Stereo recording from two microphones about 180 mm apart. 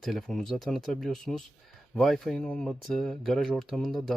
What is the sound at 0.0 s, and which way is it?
Speech, centre (ahead or behind).